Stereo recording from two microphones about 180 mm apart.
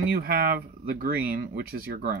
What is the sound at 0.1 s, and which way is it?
Speech, 55° right (ahead or behind).